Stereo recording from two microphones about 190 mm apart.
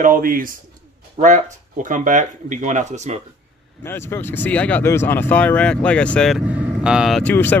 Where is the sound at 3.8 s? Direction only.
10° left (ahead or behind).